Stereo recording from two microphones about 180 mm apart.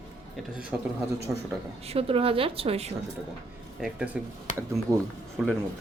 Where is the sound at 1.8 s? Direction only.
30° right (ahead or behind).